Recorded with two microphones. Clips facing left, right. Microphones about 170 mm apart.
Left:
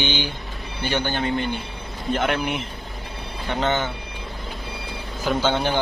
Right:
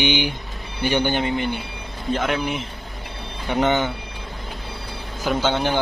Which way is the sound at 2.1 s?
Centre (ahead or behind).